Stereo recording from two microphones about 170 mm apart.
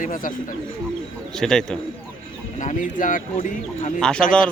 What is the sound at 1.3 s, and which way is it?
Speech, 5° left (ahead or behind).